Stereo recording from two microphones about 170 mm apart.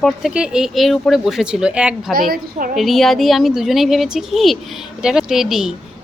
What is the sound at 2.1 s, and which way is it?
Speech, 60° right (ahead or behind).